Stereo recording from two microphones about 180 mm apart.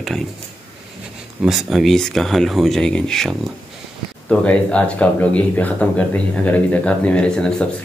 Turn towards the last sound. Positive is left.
turn(degrees=5)  # may be behind; listen again after turning